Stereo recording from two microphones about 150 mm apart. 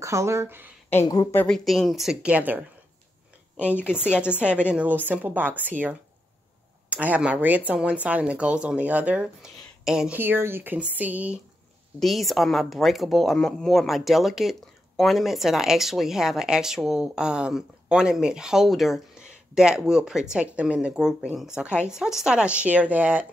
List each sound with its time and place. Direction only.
0.0 s speech: 20° right (ahead or behind)
1.0 s a woman's voice: 25° left (ahead or behind)
1.3 s speech: 10° left (ahead or behind); by 2.6 s 10° right (ahead or behind)
3.9 s speech: 15° left (ahead or behind)
4.2 s speech: 10° right (ahead or behind)
12.0 s speech: centre (ahead or behind)